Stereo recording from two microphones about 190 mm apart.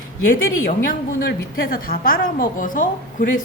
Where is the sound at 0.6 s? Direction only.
50° left (ahead or behind).